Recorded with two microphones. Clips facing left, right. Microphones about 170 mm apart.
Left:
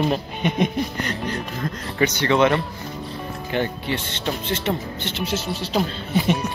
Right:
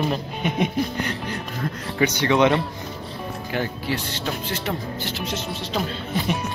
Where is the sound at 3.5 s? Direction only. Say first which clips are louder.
Left 2 dB; 5° right (ahead or behind).